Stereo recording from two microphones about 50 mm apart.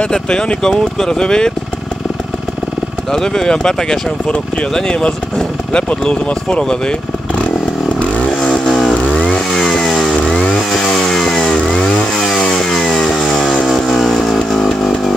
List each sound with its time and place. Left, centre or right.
0.0 s speech: centre
3.1 s speech: centre
8.3 s vehicle: centre
9.1 s chainsaw: centre
13.7 s vehicle: centre